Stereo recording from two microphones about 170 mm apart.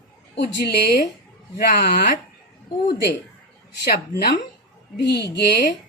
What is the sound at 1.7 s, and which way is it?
Speech, 65° left (ahead or behind).